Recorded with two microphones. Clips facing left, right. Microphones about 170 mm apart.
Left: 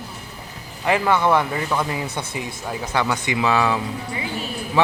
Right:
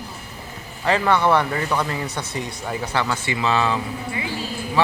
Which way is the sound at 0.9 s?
10° left (ahead or behind).